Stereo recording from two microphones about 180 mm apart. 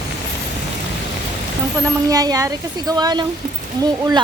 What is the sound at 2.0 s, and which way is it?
Speech, 20° right (ahead or behind).